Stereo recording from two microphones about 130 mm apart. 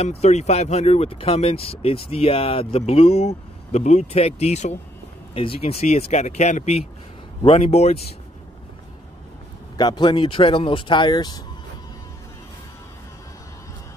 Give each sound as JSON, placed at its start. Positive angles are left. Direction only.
{"t": 0.0, "sound": "speech", "side_deg": 55}
{"t": 5.3, "sound": "speech", "side_deg": 45}
{"t": 9.8, "sound": "speech", "side_deg": 35}